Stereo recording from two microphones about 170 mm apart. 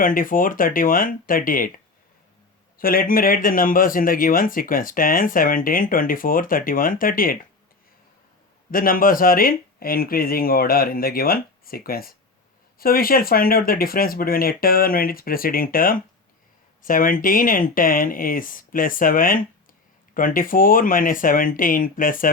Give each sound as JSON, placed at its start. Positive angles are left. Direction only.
{"t": 0.0, "sound": "speech", "side_deg": 55}
{"t": 2.7, "sound": "speech", "side_deg": 60}
{"t": 8.7, "sound": "speech", "side_deg": 55}